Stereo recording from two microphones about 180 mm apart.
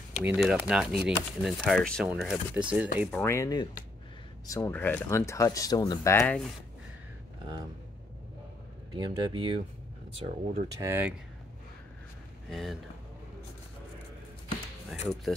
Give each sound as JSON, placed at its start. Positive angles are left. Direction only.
{"t": 0.2, "sound": "speech", "side_deg": -5}
{"t": 3.1, "sound": "speech", "side_deg": 10}
{"t": 8.9, "sound": "speech", "side_deg": -25}
{"t": 10.2, "sound": "speech", "side_deg": -45}
{"t": 10.8, "sound": "speech", "side_deg": -10}
{"t": 12.4, "sound": "speech", "side_deg": 0}
{"t": 14.9, "sound": "speech", "side_deg": 0}